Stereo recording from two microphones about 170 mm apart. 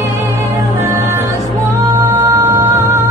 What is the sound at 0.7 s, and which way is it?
Music, 15° right (ahead or behind).